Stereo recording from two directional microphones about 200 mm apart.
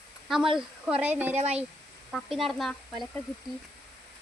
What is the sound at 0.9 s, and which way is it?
Speech, 10° right (ahead or behind).